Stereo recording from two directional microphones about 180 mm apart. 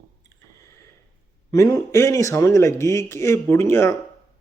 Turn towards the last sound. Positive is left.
turn(degrees=15)  # may be behind; listen again after turning